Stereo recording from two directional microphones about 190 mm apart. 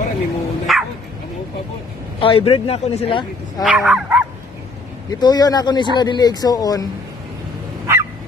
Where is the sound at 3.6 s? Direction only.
Centre (ahead or behind).